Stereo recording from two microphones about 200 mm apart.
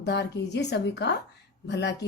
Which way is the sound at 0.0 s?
60° left (ahead or behind).